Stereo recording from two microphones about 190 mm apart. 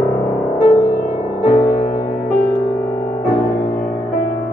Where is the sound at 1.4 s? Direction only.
50° left (ahead or behind).